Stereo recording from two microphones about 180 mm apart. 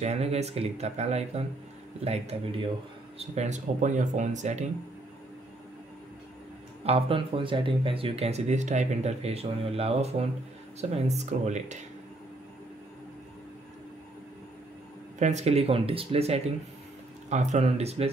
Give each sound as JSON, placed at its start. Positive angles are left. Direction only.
{"t": 0.0, "sound": "speech", "side_deg": -35}
{"t": 6.8, "sound": "speech", "side_deg": -30}
{"t": 15.1, "sound": "speech", "side_deg": -40}